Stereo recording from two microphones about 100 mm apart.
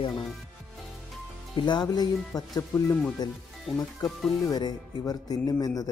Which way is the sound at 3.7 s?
Centre (ahead or behind).